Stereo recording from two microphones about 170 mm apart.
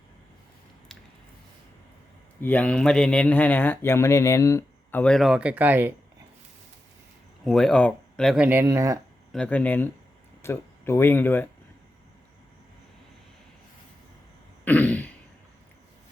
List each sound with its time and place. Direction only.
2.4 s speech: 10° left (ahead or behind); by 5.9 s 10° right (ahead or behind)
7.4 s speech: 5° left (ahead or behind)
8.6 s speech: 20° right (ahead or behind)
9.3 s speech: 5° left (ahead or behind)
14.6 s throat clearing: 10° left (ahead or behind)